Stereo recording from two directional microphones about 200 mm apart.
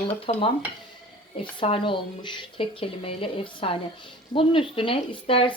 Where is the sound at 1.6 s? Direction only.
25° left (ahead or behind).